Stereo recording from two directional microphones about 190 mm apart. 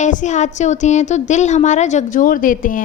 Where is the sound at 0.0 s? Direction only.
40° left (ahead or behind).